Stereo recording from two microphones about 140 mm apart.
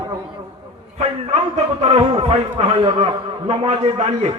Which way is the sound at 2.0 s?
40° right (ahead or behind).